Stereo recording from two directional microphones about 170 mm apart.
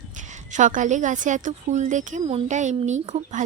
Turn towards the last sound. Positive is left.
turn(degrees=-45)  # may be behind; listen again after turning